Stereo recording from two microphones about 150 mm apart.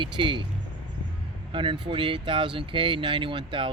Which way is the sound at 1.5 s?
35° right (ahead or behind).